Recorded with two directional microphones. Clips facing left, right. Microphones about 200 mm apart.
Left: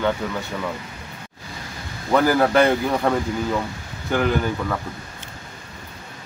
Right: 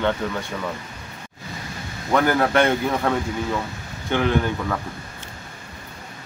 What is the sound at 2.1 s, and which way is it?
Speech, centre (ahead or behind).